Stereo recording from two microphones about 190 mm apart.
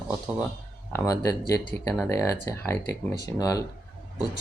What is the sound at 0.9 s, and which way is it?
Speech, 20° left (ahead or behind).